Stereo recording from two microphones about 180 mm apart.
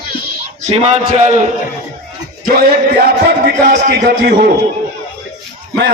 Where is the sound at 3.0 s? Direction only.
55° right (ahead or behind).